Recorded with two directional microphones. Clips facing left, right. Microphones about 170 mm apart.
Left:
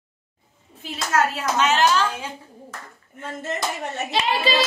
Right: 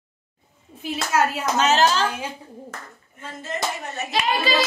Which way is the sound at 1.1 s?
10° right (ahead or behind).